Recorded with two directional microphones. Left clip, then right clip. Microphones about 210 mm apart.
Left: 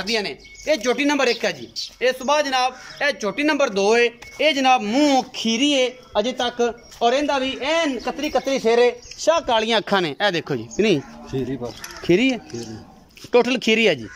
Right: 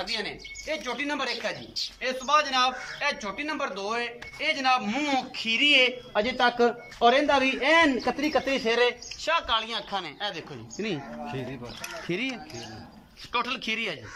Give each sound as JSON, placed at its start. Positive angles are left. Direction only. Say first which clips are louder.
{"t": 0.0, "sound": "a man's voice", "louder": "left 8 dB", "side_deg": 50}
{"t": 6.1, "sound": "speech", "louder": "left 3 dB", "side_deg": 10}
{"t": 8.3, "sound": "speech", "louder": "left 8 dB", "side_deg": 15}
{"t": 11.3, "sound": "a man's voice", "louder": "left 13 dB", "side_deg": 30}
{"t": 12.1, "sound": "speech", "louder": "left 14 dB", "side_deg": 45}